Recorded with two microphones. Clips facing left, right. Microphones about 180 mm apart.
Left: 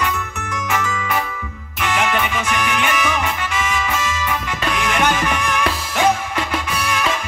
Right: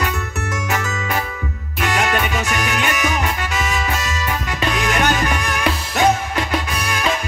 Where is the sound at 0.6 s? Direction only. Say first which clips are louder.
Left 3 dB; 40° right (ahead or behind).